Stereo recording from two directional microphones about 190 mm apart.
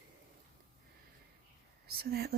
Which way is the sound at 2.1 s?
55° right (ahead or behind).